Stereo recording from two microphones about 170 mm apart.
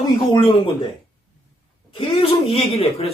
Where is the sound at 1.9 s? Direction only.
35° left (ahead or behind).